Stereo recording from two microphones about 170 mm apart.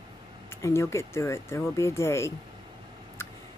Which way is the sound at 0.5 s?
15° left (ahead or behind).